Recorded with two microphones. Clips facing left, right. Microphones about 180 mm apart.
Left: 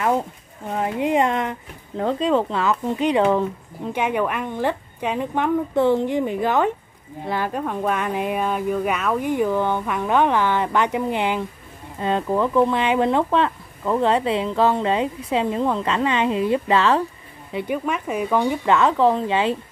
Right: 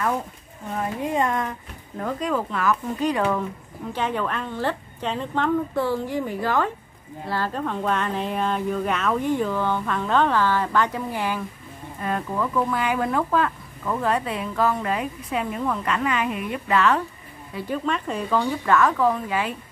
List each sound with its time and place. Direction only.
0.7 s speech: 20° left (ahead or behind)
17.5 s speech: 20° left (ahead or behind)